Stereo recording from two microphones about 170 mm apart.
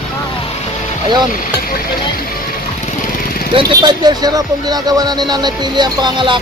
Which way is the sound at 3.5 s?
25° right (ahead or behind).